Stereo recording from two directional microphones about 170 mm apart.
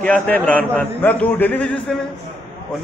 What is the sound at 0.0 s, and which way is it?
A man's voice, 10° left (ahead or behind).